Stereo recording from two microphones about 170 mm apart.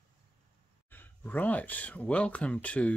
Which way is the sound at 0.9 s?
10° left (ahead or behind).